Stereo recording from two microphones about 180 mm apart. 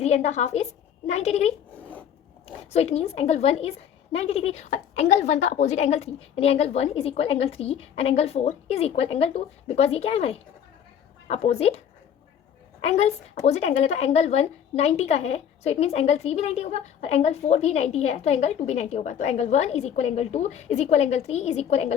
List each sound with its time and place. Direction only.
0.0 s speech: 35° left (ahead or behind)
1.7 s zipper: 10° left (ahead or behind)
2.7 s speech: 35° left (ahead or behind)
12.8 s speech: 35° left (ahead or behind)